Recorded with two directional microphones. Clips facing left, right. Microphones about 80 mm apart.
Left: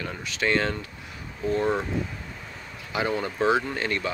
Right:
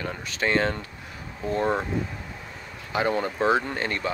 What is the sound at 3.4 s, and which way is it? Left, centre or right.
Speech, right.